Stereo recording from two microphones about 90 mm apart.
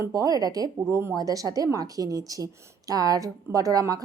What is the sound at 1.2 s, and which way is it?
Speech, 40° right (ahead or behind).